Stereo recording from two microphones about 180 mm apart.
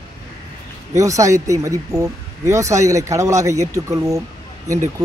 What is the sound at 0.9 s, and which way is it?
Speech, 15° right (ahead or behind).